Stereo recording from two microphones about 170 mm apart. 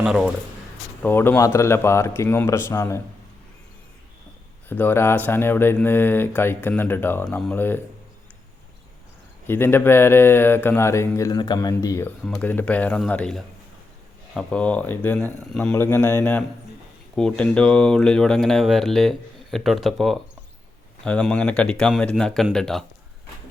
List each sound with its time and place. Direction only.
0.0 s speech: 5° right (ahead or behind)
1.0 s speech: 10° left (ahead or behind)
4.7 s speech: 10° left (ahead or behind)
9.5 s speech: 15° left (ahead or behind)
12.2 s speech: centre (ahead or behind)